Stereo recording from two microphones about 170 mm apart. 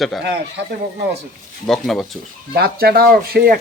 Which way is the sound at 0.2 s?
90° right.